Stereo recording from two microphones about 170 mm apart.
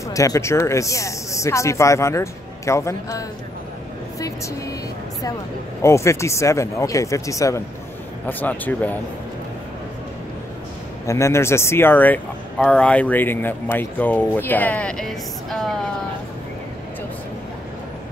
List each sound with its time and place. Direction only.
0.1 s speech: 20° left (ahead or behind)
5.8 s speech: 15° left (ahead or behind)
11.1 s speech: 15° left (ahead or behind)